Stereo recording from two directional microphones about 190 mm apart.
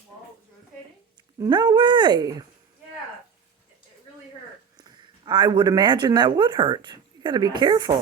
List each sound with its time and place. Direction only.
1.4 s speech: 25° right (ahead or behind)
4.8 s speech: 25° right (ahead or behind)